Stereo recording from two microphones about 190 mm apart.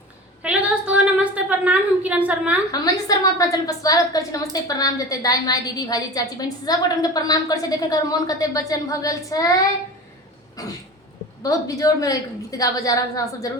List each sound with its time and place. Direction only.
0.4 s a sound: 5° right (ahead or behind)
2.7 s a woman's voice: 20° left (ahead or behind)
10.6 s a woman's voice: 20° left (ahead or behind)